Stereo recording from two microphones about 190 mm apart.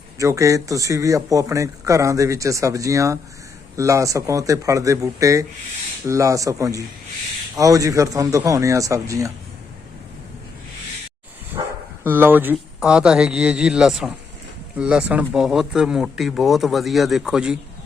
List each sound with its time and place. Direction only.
0.2 s speech: 15° right (ahead or behind)
12.0 s speech: 10° right (ahead or behind)